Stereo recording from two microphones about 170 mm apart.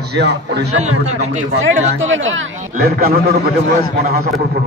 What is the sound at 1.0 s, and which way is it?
Speech, 45° right (ahead or behind).